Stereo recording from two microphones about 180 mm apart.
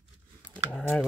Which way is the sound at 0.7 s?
5° left (ahead or behind).